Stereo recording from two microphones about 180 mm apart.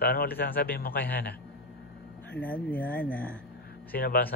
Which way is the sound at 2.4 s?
10° left (ahead or behind).